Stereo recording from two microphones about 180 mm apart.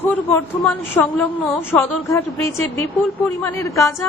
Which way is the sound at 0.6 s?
5° left (ahead or behind).